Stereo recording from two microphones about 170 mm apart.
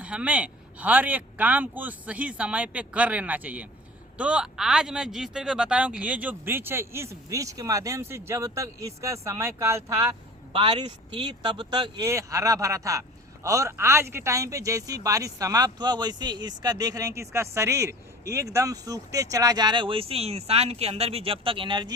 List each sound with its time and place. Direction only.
0.0 s speech: 5° right (ahead or behind)
10.5 s speech: 30° right (ahead or behind)